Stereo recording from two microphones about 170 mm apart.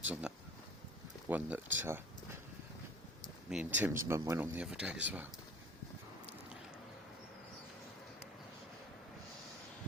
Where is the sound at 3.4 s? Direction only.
5° right (ahead or behind).